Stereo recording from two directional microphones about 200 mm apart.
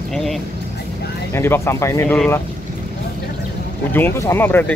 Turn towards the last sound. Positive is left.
turn(degrees=10)  # may be behind; listen again after turning